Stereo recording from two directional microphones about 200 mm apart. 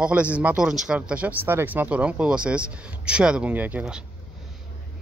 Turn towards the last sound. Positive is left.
turn(degrees=-5)  # may be behind; listen again after turning